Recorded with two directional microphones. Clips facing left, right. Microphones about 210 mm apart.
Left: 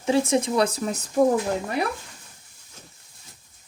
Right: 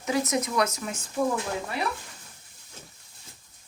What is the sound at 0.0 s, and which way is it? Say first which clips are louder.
Speech: left 5 dB; 30° left (ahead or behind).